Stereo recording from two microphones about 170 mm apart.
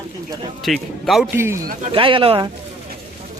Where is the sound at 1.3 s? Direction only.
15° right (ahead or behind).